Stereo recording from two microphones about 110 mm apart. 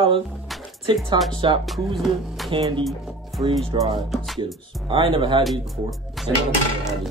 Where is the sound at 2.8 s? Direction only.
Centre (ahead or behind).